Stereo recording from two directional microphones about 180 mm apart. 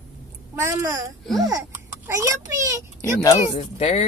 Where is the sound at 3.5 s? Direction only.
35° left (ahead or behind).